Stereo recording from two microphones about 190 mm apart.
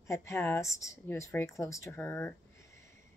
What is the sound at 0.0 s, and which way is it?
Speech, 15° left (ahead or behind).